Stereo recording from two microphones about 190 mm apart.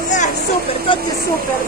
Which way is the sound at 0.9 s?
25° left (ahead or behind).